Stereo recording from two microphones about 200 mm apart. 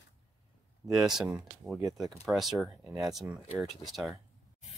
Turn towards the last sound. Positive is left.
turn(degrees=0)  # may be behind; listen again after turning